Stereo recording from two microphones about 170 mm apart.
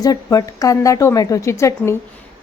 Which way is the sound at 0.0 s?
20° left (ahead or behind).